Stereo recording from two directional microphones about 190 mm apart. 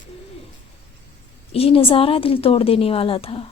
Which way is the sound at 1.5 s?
30° left (ahead or behind).